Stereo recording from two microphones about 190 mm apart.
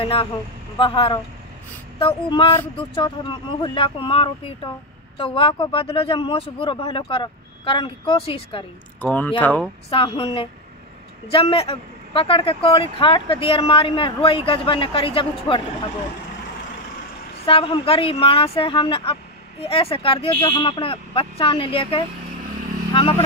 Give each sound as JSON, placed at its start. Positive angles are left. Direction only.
{"t": 0.0, "sound": "speech", "side_deg": 30}
{"t": 9.0, "sound": "speech", "side_deg": 10}
{"t": 9.8, "sound": "speech", "side_deg": 30}
{"t": 17.5, "sound": "speech", "side_deg": 30}